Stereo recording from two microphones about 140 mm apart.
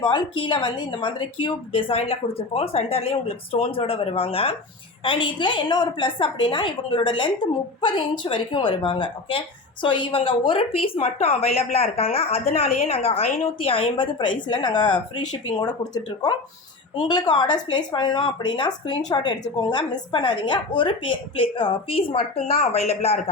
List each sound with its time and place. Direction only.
0.0 s speech: 35° left (ahead or behind); by 23.3 s 50° left (ahead or behind)